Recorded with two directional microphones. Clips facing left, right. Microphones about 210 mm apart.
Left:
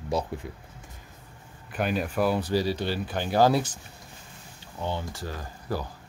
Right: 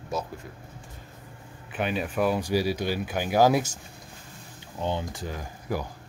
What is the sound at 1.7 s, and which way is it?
Speech, centre (ahead or behind).